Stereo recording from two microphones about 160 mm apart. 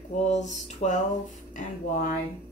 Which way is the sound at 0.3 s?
45° left (ahead or behind).